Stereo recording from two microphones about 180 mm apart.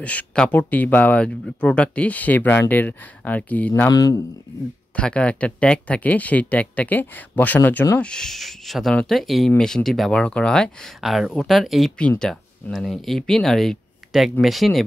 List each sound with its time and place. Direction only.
0.0 s speech: 10° left (ahead or behind)
4.9 s speech: 5° left (ahead or behind)